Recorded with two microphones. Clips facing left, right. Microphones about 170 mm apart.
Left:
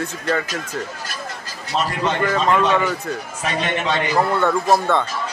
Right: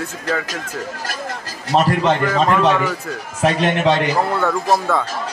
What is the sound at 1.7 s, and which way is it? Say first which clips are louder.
Speech: right 6 dB; 60° right (ahead or behind).